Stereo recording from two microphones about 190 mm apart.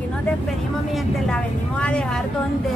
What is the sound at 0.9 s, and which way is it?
Speech, 5° left (ahead or behind).